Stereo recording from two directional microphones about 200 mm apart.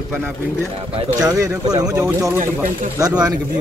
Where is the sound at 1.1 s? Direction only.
15° right (ahead or behind).